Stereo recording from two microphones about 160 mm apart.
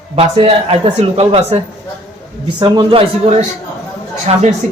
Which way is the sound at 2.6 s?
30° right (ahead or behind).